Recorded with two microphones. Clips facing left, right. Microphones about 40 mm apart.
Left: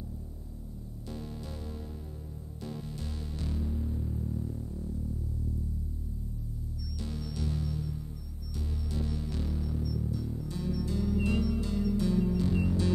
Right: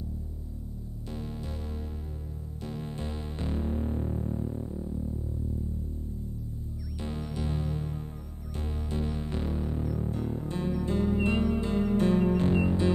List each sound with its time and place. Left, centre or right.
1.1 s music: right
2.6 s music: right
7.0 s music: right